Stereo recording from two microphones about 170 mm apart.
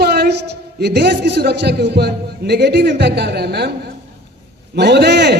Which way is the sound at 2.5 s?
90° right.